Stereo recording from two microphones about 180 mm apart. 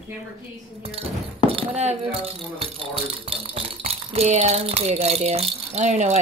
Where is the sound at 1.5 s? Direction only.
35° right (ahead or behind).